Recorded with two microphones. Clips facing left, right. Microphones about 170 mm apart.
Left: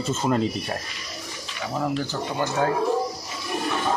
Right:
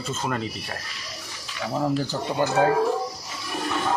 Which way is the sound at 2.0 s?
35° right (ahead or behind).